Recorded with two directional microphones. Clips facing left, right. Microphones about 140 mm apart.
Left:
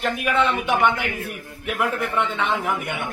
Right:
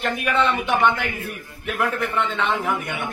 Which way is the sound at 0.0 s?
5° left (ahead or behind).